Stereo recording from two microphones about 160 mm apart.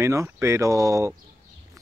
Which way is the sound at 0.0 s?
20° right (ahead or behind).